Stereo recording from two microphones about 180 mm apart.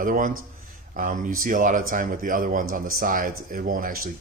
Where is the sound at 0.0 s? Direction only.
50° right (ahead or behind).